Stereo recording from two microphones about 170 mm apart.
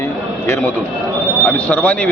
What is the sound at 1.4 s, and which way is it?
Speech, 10° left (ahead or behind).